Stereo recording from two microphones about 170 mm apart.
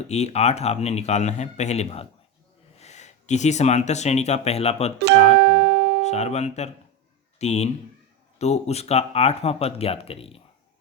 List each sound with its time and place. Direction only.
0.1 s speech: 40° left (ahead or behind)
5.0 s music: 80° right
6.0 s speech: 40° left (ahead or behind)